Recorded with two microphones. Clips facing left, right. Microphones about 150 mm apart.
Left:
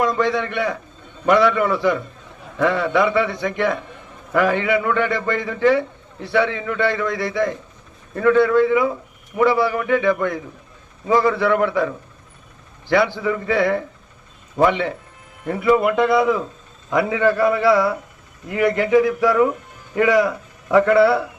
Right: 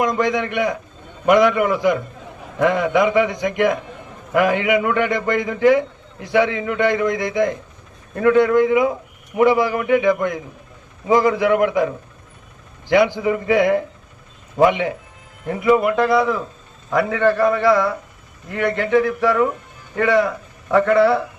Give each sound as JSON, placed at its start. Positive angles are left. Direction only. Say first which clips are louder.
{"t": 0.0, "sound": "a man's voice", "louder": "even", "side_deg": -15}